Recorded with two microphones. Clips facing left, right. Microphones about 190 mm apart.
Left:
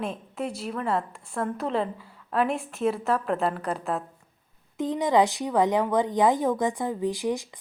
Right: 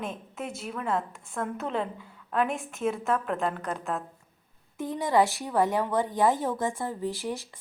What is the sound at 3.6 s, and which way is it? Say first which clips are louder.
Speech: left 3 dB; 35° left (ahead or behind).